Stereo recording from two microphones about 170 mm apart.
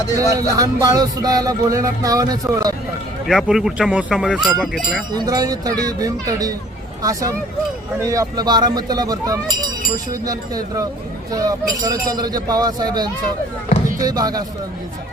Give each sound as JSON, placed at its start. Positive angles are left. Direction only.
{"t": 0.2, "sound": "music", "side_deg": -20}
{"t": 3.2, "sound": "speech", "side_deg": 0}
{"t": 5.1, "sound": "music", "side_deg": -20}